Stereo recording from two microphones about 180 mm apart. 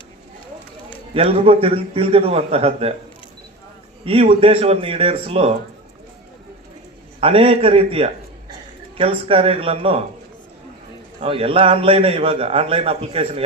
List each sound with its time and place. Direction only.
1.1 s a man's voice: 30° right (ahead or behind)
4.0 s a man's voice: 35° right (ahead or behind)
7.2 s a man's voice: 30° right (ahead or behind)
11.2 s a man's voice: 30° right (ahead or behind)